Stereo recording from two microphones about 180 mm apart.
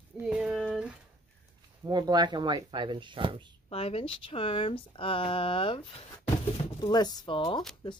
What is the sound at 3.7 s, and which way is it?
Speech, 35° left (ahead or behind).